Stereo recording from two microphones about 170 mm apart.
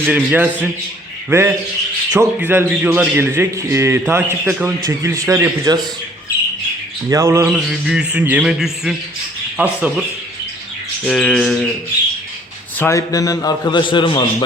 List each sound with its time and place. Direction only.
0.0 s a man's voice: 10° right (ahead or behind)
7.1 s a man's voice: 20° right (ahead or behind)
11.0 s bird: 5° left (ahead or behind)
12.8 s a man's voice: 20° left (ahead or behind)